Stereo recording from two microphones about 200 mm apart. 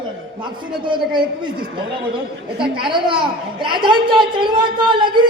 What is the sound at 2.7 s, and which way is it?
A woman's voice, 25° right (ahead or behind).